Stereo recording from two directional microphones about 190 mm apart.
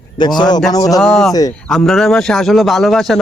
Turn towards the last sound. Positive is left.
turn(degrees=0)  # may be behind; listen again after turning